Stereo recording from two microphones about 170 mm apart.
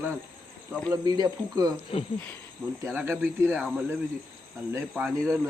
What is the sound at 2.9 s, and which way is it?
Speech, 15° right (ahead or behind).